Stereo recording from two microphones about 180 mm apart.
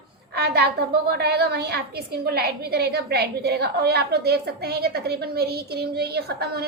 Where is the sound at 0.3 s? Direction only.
65° right (ahead or behind).